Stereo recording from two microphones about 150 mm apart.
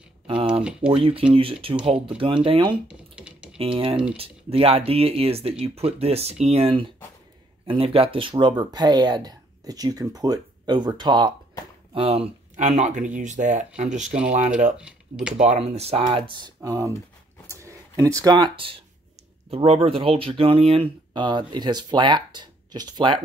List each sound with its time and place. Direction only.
0.3 s a sound: 35° right (ahead or behind)
0.7 s speech: 40° right (ahead or behind)
2.9 s a sound: 5° right (ahead or behind)
3.5 s speech: 40° right (ahead or behind)
11.9 s speech: 40° right (ahead or behind)
12.6 s speech: 55° right (ahead or behind)
14.8 s speech: 5° right (ahead or behind)
15.3 s speech: 50° right (ahead or behind); by 23.2 s 30° right (ahead or behind)